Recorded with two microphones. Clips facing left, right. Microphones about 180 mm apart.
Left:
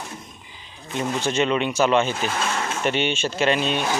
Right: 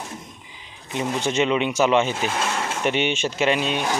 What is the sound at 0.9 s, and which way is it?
Speech, 15° right (ahead or behind).